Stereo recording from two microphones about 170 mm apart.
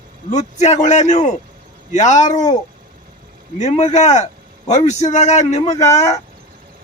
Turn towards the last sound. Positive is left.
turn(degrees=40)  # may be behind; listen again after turning